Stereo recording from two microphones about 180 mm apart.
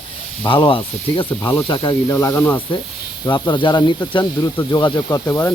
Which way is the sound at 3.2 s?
25° left (ahead or behind).